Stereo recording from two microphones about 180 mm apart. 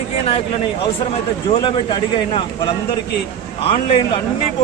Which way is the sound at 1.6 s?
25° left (ahead or behind).